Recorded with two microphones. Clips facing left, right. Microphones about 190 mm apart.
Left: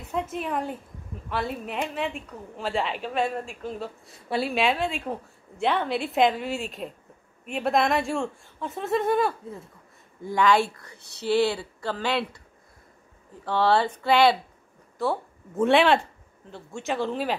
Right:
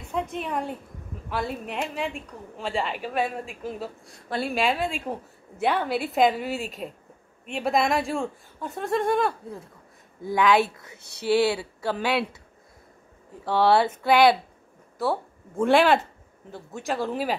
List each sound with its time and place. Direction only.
0.1 s a woman's voice: 5° left (ahead or behind)
11.0 s speech: 20° left (ahead or behind)
11.2 s speech: 10° right (ahead or behind)
13.5 s a woman's voice: 10° right (ahead or behind)